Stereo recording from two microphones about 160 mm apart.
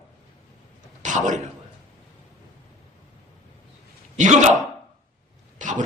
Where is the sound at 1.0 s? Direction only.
50° right (ahead or behind).